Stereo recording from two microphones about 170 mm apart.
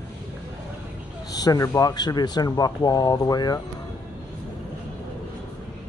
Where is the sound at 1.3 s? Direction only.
20° left (ahead or behind).